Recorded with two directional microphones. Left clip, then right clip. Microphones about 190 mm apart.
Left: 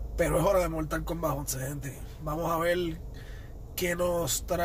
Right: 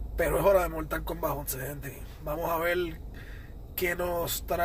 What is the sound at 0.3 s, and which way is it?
Speech, 15° left (ahead or behind).